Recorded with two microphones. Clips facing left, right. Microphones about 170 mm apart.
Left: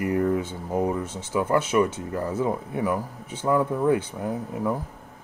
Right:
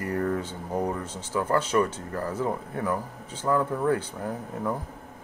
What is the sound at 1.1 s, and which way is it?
Speech, 15° right (ahead or behind).